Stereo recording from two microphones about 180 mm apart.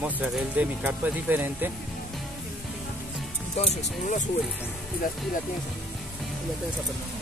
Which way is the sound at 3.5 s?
40° left (ahead or behind).